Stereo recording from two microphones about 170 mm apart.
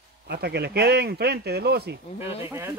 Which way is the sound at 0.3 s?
75° right (ahead or behind).